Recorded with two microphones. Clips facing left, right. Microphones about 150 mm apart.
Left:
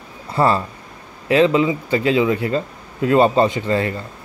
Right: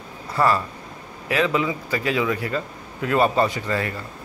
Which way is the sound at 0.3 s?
25° left (ahead or behind).